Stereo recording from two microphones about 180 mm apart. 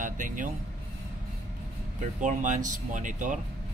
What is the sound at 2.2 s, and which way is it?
Speech, 45° right (ahead or behind).